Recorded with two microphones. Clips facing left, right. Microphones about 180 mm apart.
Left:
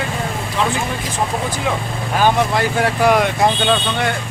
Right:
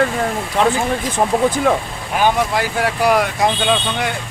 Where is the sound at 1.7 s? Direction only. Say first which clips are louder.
Right 3 dB; 50° right (ahead or behind).